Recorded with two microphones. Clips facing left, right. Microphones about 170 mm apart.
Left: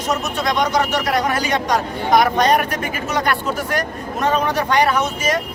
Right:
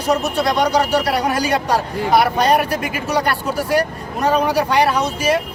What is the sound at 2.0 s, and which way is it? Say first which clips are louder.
Speech: even; 5° right (ahead or behind).